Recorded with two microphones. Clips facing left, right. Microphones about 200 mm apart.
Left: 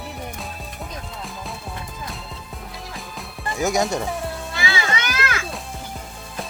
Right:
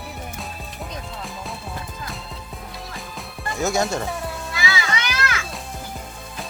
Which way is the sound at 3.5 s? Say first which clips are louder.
Left 1 dB; 10° left (ahead or behind).